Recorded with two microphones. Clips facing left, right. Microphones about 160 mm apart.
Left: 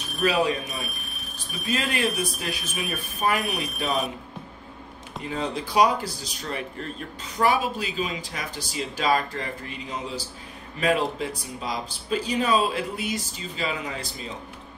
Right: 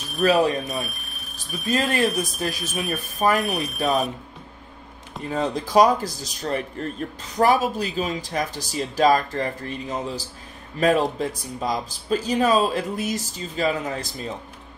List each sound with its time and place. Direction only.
0.2 s speech: 40° right (ahead or behind)
0.7 s speech: centre (ahead or behind)
1.7 s speech: 40° right (ahead or behind)
3.3 s speech: centre (ahead or behind)
3.8 s speech: 40° right (ahead or behind)
5.3 s speech: 40° right (ahead or behind)